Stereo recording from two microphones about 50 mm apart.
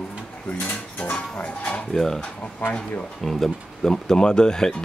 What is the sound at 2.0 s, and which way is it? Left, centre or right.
Speech, centre.